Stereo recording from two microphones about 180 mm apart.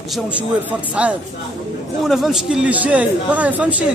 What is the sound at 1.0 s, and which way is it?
A man's voice, 5° right (ahead or behind).